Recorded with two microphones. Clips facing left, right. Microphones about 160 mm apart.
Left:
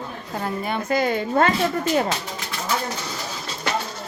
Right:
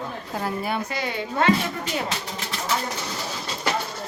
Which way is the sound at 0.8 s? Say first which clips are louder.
Left 7 dB; 50° left (ahead or behind).